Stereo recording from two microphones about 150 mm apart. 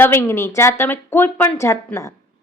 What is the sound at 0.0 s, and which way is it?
A woman's voice, 15° left (ahead or behind).